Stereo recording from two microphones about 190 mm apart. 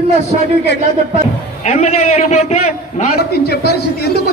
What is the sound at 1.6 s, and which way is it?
A man's voice, 35° left (ahead or behind).